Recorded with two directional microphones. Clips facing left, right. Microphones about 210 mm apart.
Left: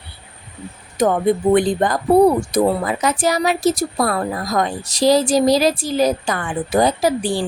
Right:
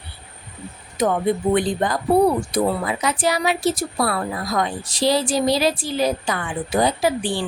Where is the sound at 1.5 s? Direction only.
50° left (ahead or behind).